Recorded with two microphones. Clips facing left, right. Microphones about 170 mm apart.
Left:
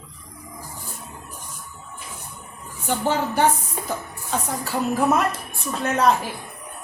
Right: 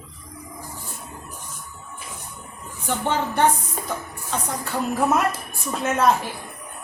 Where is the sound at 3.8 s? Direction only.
5° left (ahead or behind).